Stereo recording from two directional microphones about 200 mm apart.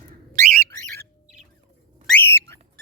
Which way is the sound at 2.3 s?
10° left (ahead or behind).